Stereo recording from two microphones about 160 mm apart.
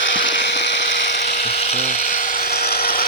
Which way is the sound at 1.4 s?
40° left (ahead or behind).